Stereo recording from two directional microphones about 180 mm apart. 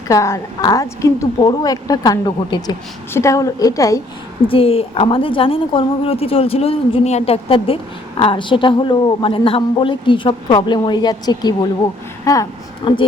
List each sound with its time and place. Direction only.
0.1 s a woman's voice: 15° left (ahead or behind)
4.4 s a woman's voice: 30° left (ahead or behind)